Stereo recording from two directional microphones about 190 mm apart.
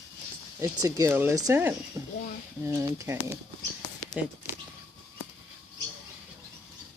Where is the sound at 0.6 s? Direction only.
20° right (ahead or behind).